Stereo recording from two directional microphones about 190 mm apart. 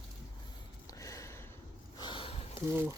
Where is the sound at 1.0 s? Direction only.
15° left (ahead or behind).